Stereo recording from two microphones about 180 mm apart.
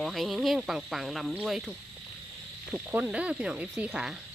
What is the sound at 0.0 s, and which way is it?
Speech, centre (ahead or behind).